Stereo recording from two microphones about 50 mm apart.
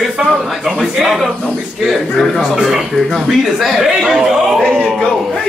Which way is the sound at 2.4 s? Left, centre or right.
Centre.